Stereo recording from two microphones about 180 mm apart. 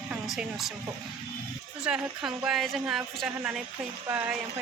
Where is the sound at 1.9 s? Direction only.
Centre (ahead or behind).